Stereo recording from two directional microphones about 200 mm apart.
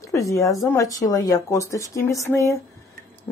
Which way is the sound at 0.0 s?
15° left (ahead or behind).